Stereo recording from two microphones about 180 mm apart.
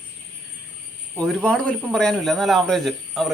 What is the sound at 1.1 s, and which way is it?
Speech, 5° left (ahead or behind).